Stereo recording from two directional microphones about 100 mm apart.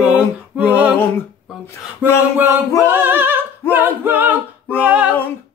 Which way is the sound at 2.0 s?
20° right (ahead or behind).